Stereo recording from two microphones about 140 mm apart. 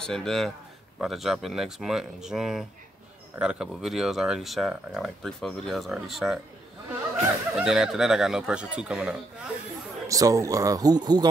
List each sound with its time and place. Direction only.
0.0 s speech: 5° left (ahead or behind)
7.5 s speech: 5° right (ahead or behind)
10.0 s speech: 25° right (ahead or behind)